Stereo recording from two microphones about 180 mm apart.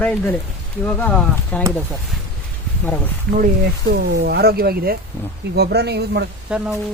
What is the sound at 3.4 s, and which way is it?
Speech, 65° right (ahead or behind).